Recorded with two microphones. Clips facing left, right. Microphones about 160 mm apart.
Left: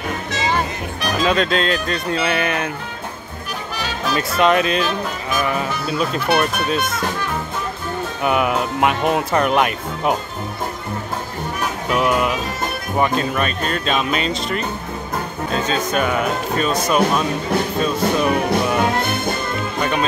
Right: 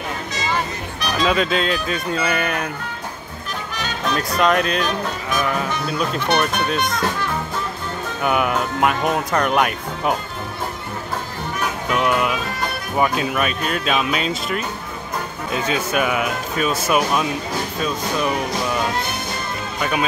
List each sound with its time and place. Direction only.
1.2 s speech: 5° right (ahead or behind)
3.8 s speech: 5° left (ahead or behind)
8.2 s speech: centre (ahead or behind)
11.9 s speech: centre (ahead or behind)
18.5 s music: 55° left (ahead or behind)
19.8 s speech: 5° right (ahead or behind)